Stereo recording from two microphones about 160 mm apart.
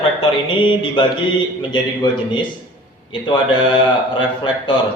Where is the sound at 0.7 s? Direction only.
35° left (ahead or behind).